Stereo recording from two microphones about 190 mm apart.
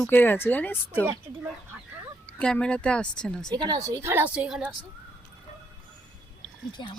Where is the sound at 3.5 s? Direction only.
20° right (ahead or behind); by 4.7 s 5° right (ahead or behind).